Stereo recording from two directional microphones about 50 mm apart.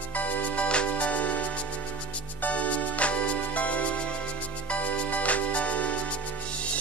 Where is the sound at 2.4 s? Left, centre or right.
Left.